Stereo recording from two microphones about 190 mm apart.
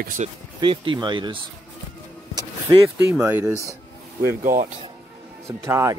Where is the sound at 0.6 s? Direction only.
25° right (ahead or behind).